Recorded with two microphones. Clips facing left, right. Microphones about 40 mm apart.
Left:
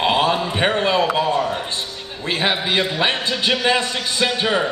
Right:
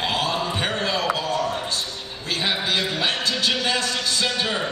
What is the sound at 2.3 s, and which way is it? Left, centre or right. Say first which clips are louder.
A man's voice: left 4 dB; left.